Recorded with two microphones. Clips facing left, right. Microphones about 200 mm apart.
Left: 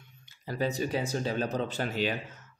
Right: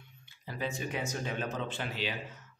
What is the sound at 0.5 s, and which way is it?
A man's voice, 40° left (ahead or behind).